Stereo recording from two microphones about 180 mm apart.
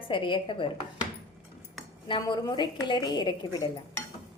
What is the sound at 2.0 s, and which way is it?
A woman's voice, 25° left (ahead or behind).